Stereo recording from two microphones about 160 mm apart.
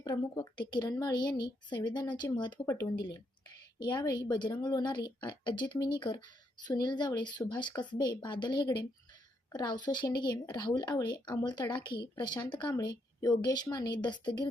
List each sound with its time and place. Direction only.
0.0 s a woman's voice: 25° left (ahead or behind)